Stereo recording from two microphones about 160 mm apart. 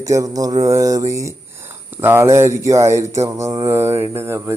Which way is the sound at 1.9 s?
15° right (ahead or behind).